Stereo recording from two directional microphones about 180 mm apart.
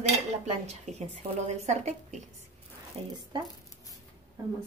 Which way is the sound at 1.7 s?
40° right (ahead or behind).